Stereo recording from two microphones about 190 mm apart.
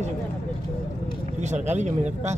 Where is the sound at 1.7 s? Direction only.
40° right (ahead or behind).